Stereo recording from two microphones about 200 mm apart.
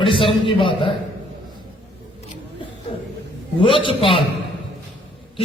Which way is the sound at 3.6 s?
25° left (ahead or behind).